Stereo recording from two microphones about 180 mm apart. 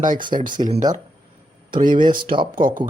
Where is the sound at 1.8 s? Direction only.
25° right (ahead or behind).